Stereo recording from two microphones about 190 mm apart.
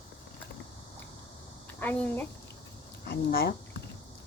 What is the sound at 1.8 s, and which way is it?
Speech, 10° left (ahead or behind).